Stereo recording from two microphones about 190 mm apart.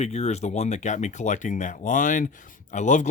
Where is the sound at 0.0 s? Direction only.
35° left (ahead or behind).